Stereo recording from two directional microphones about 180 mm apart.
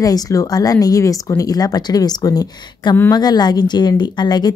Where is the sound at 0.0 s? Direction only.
20° left (ahead or behind).